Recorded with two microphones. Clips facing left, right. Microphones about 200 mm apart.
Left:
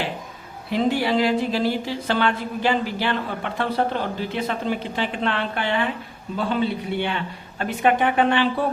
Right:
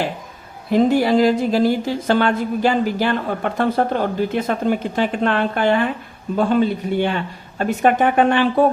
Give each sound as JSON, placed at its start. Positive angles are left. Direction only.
{"t": 0.7, "sound": "speech", "side_deg": -45}